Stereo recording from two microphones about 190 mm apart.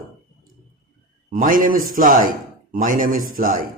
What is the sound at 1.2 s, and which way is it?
Speech, 45° right (ahead or behind).